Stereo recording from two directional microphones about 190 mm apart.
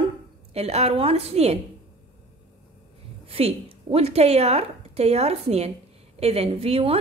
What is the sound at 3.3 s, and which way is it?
A woman's voice, 30° right (ahead or behind).